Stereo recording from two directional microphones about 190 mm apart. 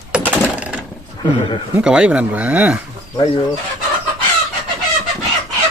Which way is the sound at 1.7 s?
5° right (ahead or behind).